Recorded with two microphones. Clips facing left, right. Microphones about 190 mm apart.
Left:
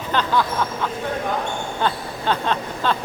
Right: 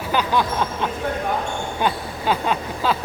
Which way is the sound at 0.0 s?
10° right (ahead or behind).